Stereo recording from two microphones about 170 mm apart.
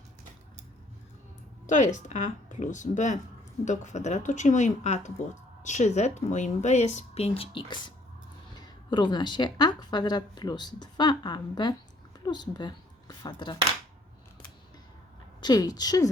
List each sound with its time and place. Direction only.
1.6 s a woman's voice: 45° left (ahead or behind); by 13.6 s 25° left (ahead or behind)
15.4 s a woman's voice: 25° left (ahead or behind)